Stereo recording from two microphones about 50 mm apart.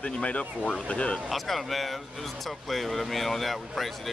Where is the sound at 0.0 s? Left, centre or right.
Left.